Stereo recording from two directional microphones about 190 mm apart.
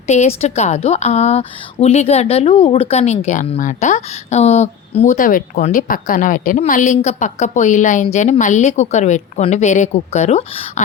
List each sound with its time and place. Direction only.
0.1 s a woman's voice: 35° left (ahead or behind)